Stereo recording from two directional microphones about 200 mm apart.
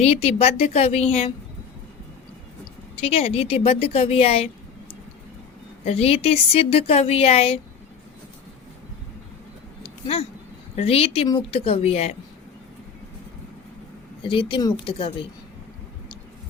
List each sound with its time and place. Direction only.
0.0 s a woman's voice: 30° left (ahead or behind)
2.9 s a woman's voice: 30° left (ahead or behind)
5.8 s a woman's voice: 30° left (ahead or behind)
9.8 s a sound: 30° left (ahead or behind)
10.8 s a woman's voice: 30° left (ahead or behind)
14.3 s a woman's voice: 25° left (ahead or behind)